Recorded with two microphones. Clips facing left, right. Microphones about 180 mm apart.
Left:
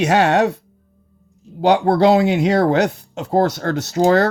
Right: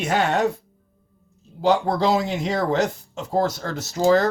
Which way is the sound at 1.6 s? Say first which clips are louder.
Left 6 dB; 70° left (ahead or behind).